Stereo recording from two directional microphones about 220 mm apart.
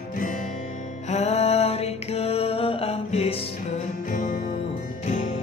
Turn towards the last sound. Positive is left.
turn(degrees=30)  # may be behind; listen again after turning